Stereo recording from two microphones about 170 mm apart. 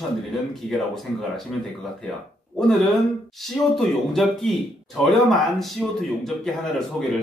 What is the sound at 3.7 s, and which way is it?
Speech, centre (ahead or behind).